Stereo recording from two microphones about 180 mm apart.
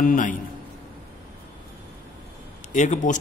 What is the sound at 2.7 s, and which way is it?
Speech, 45° left (ahead or behind).